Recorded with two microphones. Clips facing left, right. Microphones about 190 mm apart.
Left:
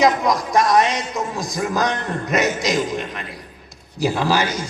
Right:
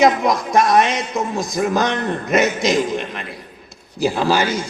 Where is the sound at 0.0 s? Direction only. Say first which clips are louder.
Right 2 dB; 25° right (ahead or behind).